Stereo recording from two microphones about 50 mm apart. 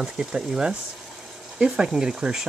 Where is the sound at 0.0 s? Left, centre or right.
Centre.